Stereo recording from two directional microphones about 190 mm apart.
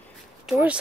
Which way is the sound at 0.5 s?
5° right (ahead or behind).